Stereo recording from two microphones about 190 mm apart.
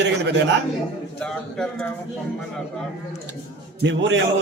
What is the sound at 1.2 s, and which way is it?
Speech, 5° left (ahead or behind).